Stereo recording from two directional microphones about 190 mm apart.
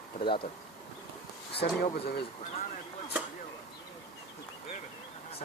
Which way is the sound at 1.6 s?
55° left (ahead or behind).